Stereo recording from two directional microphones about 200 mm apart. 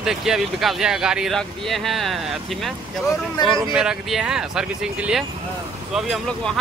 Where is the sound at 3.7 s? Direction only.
Centre (ahead or behind).